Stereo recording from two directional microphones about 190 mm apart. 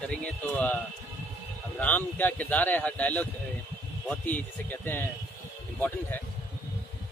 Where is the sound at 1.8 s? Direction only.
10° left (ahead or behind).